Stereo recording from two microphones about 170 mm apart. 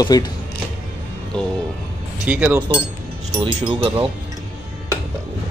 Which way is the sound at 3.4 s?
25° right (ahead or behind).